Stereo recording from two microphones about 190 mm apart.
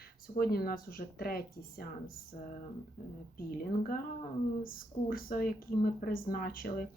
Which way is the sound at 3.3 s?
50° left (ahead or behind).